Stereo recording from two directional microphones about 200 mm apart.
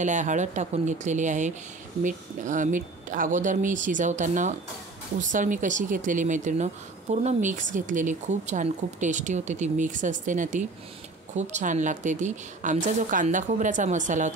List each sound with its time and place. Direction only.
0.0 s speech: 40° right (ahead or behind)